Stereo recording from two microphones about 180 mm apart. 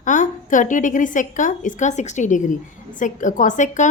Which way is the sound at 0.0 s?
45° left (ahead or behind).